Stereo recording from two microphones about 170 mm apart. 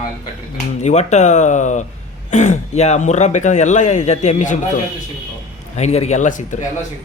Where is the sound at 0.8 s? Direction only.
40° left (ahead or behind).